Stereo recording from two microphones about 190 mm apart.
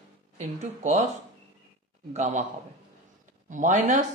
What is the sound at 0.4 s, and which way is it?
Speech, 40° right (ahead or behind).